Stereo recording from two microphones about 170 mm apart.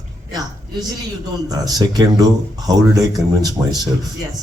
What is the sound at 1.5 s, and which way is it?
Speech, 20° right (ahead or behind).